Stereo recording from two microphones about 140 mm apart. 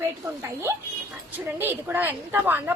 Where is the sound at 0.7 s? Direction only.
20° right (ahead or behind).